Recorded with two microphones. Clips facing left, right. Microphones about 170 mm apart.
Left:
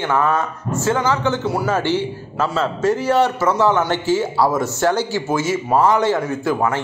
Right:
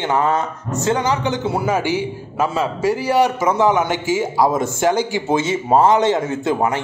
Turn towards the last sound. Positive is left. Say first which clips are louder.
# right 1 dB
turn(degrees=-20)  # may be behind; listen again after turning